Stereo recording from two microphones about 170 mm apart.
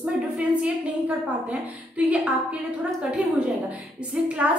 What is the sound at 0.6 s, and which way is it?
A woman's voice, 5° right (ahead or behind).